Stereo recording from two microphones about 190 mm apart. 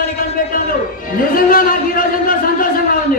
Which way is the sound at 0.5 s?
50° left (ahead or behind).